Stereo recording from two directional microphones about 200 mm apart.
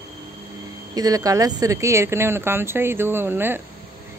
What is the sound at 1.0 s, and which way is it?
A woman's voice, 20° right (ahead or behind).